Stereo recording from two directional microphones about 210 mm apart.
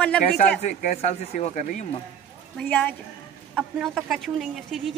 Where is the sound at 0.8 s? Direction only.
35° left (ahead or behind).